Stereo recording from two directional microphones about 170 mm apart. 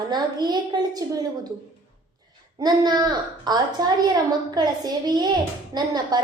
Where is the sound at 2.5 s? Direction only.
25° right (ahead or behind).